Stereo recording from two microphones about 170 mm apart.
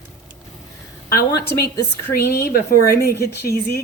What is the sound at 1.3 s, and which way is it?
Speech, 20° left (ahead or behind).